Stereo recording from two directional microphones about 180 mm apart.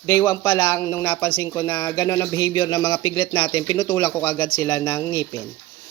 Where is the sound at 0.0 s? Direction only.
20° left (ahead or behind).